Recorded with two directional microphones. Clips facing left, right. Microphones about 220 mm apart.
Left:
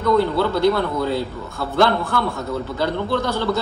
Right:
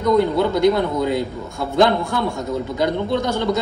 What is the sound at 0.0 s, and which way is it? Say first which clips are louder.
A man's voice: right 1 dB; 15° right (ahead or behind).